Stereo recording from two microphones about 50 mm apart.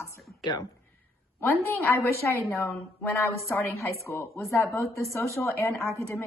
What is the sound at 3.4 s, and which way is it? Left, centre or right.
Speech, left.